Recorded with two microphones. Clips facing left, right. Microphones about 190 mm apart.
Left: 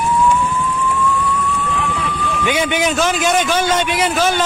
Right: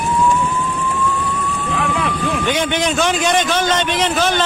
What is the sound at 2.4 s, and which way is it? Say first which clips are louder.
A man's voice: left 3 dB; 10° left (ahead or behind).